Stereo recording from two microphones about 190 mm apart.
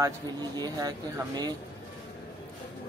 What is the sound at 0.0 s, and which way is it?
Speech, 20° right (ahead or behind).